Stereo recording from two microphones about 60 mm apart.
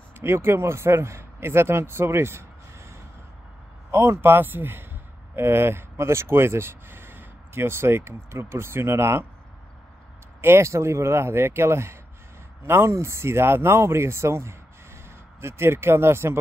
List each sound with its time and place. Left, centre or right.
0.2 s a man's voice: right
10.4 s a man's voice: right